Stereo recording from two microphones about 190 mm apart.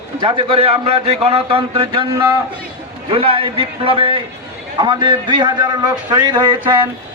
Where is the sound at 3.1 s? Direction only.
30° right (ahead or behind).